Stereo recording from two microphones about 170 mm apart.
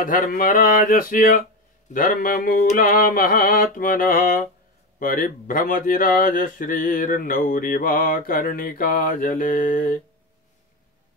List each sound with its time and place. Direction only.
0.0 s a man's voice: 55° left (ahead or behind)